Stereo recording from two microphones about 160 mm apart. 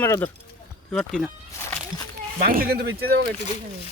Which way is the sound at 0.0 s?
15° left (ahead or behind).